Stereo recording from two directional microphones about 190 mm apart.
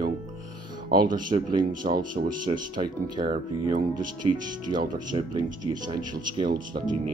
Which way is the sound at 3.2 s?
45° right (ahead or behind).